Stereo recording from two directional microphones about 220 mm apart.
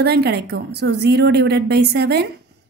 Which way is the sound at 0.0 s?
50° right (ahead or behind).